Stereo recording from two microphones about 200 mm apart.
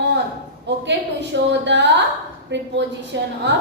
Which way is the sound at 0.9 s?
60° right (ahead or behind).